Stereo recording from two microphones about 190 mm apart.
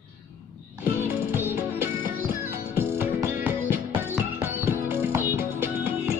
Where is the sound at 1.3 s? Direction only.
10° right (ahead or behind).